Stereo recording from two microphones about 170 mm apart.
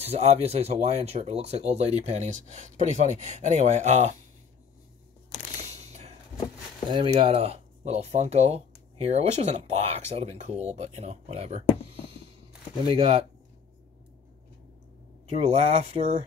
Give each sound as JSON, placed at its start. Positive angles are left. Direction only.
{"t": 0.0, "sound": "speech", "side_deg": -35}
{"t": 5.7, "sound": "a sound", "side_deg": -40}
{"t": 6.9, "sound": "speech", "side_deg": -30}
{"t": 12.8, "sound": "speech", "side_deg": -35}
{"t": 15.2, "sound": "speech", "side_deg": -40}